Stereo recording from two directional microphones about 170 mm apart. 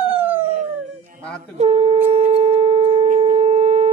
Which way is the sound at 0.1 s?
10° right (ahead or behind).